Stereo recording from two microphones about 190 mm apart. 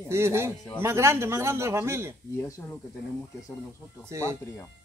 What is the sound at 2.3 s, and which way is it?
Speech, 15° left (ahead or behind).